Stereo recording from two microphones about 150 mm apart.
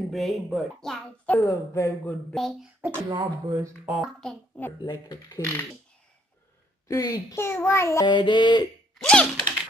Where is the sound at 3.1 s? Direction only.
25° right (ahead or behind).